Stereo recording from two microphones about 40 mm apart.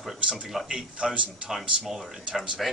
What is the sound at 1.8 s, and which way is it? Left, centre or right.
Speech, centre.